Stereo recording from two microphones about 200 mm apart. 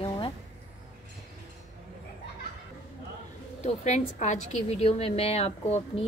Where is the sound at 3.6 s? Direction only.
35° left (ahead or behind).